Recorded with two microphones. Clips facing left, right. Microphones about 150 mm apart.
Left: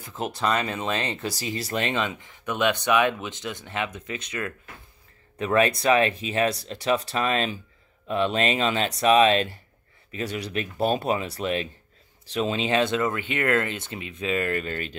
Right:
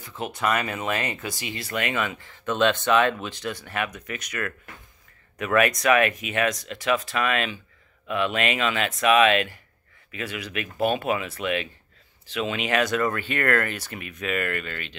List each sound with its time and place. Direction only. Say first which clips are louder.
0.3 s speech: even; 30° left (ahead or behind)